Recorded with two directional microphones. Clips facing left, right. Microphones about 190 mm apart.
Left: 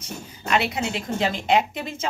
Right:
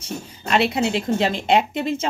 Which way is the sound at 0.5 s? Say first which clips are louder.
Right 4 dB; 30° right (ahead or behind).